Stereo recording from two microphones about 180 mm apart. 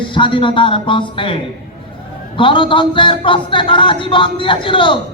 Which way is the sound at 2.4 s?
30° left (ahead or behind).